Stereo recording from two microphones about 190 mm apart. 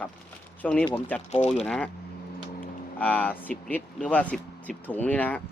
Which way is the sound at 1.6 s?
5° left (ahead or behind).